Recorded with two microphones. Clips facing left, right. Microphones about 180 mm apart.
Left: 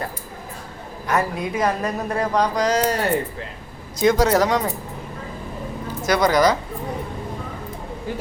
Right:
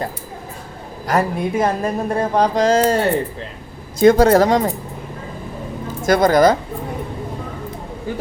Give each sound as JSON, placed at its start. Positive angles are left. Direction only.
{"t": 1.0, "sound": "speech", "side_deg": -30}
{"t": 4.0, "sound": "speech", "side_deg": -55}
{"t": 4.4, "sound": "speech", "side_deg": -35}
{"t": 6.0, "sound": "a woman's voice", "side_deg": -50}